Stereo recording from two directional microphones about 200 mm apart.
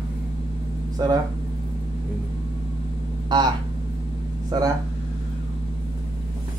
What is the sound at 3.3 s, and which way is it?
Speech, 20° right (ahead or behind).